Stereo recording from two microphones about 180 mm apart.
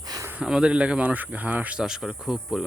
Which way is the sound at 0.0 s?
20° right (ahead or behind).